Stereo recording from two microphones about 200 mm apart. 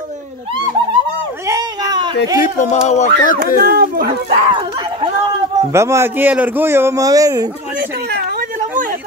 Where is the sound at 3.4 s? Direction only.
50° right (ahead or behind).